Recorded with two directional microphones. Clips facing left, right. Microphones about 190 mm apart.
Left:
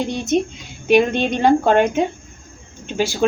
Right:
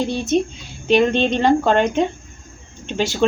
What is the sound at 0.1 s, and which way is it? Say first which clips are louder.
Speech: even; 15° left (ahead or behind).